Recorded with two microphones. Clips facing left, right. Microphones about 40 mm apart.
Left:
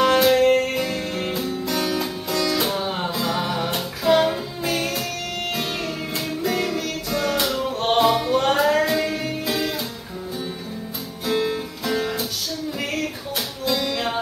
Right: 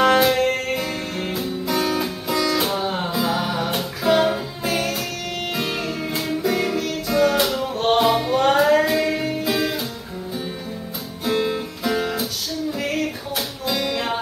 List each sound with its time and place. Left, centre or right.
0.0 s music: centre
6.1 s music: centre
11.2 s music: centre
13.7 s music: centre